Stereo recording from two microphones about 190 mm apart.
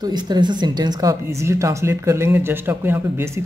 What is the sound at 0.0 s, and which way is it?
Speech, 20° right (ahead or behind).